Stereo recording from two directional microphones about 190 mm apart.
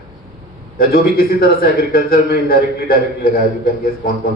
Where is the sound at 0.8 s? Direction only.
50° left (ahead or behind).